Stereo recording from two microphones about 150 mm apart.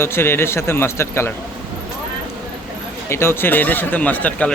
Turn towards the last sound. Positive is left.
turn(degrees=10)  # may be behind; listen again after turning